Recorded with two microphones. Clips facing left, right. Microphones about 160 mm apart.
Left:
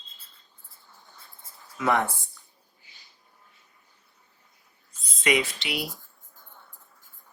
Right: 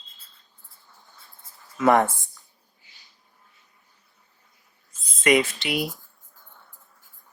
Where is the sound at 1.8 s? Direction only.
50° right (ahead or behind).